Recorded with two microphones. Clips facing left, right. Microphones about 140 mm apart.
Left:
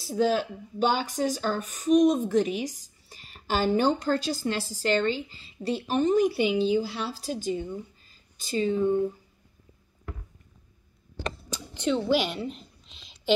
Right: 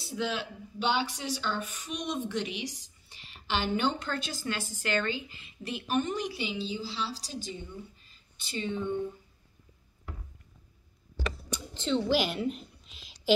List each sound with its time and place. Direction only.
0.0 s speech: 45° left (ahead or behind)
6.1 s a woman's voice: 50° left (ahead or behind)
11.9 s a sound: centre (ahead or behind)